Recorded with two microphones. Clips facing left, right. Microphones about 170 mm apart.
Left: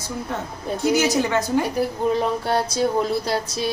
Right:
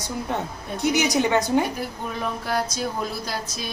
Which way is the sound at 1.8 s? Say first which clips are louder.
Left 9 dB; 30° left (ahead or behind).